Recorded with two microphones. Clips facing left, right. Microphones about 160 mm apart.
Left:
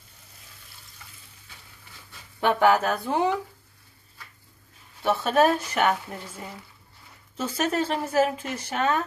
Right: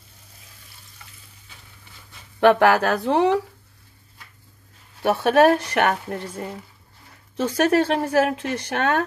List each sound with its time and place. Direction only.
2.4 s speech: 85° right; by 3.3 s 70° right (ahead or behind)
5.0 s a woman's voice: 65° right (ahead or behind)